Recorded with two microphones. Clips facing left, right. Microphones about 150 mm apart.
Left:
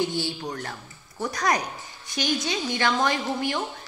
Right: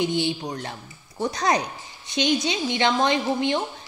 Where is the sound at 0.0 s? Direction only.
20° right (ahead or behind).